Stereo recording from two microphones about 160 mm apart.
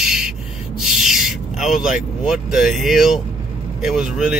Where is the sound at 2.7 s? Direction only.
Centre (ahead or behind).